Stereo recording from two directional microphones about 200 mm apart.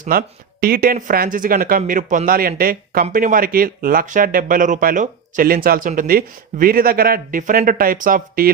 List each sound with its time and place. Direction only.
0.0 s speech: 45° right (ahead or behind)